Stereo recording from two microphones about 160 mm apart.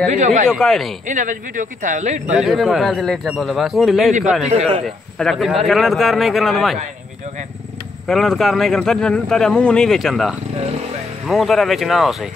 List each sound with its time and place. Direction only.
0.1 s speech: 50° right (ahead or behind)
0.5 s speech: 5° left (ahead or behind)
1.0 s speech: 55° right (ahead or behind)
2.3 s speech: centre (ahead or behind)
4.5 s a man's voice: 40° right (ahead or behind)
4.8 s speech: centre (ahead or behind)
8.1 s speech: centre (ahead or behind)